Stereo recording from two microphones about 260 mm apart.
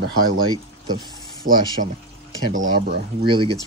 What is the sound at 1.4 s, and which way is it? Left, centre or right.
Speech, right.